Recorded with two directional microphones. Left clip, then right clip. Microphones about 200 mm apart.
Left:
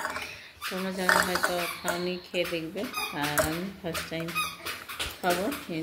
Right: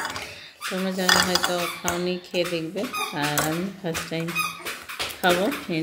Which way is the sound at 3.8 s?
5° right (ahead or behind).